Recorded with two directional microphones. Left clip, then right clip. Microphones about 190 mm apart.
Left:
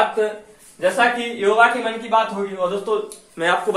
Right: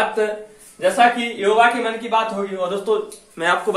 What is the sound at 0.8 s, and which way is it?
A man's voice, centre (ahead or behind).